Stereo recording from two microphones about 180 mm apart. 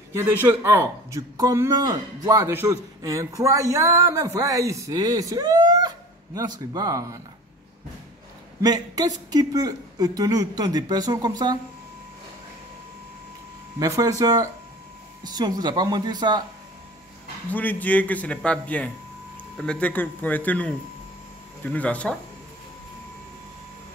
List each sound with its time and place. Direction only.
0.1 s a man's voice: 15° right (ahead or behind)
8.5 s a man's voice: 20° right (ahead or behind)
13.7 s a man's voice: 20° right (ahead or behind)
17.5 s a man's voice: 10° left (ahead or behind)